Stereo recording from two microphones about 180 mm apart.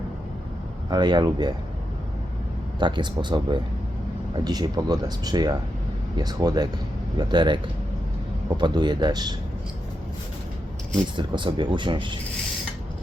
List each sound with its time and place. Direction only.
0.9 s speech: 25° right (ahead or behind)
2.7 s speech: 25° right (ahead or behind)
11.2 s speech: 25° right (ahead or behind)